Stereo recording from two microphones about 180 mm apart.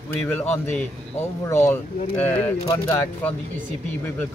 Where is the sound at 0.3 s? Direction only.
10° left (ahead or behind).